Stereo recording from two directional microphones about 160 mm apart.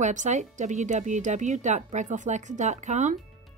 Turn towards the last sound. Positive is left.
turn(degrees=-50)  # may be behind; listen again after turning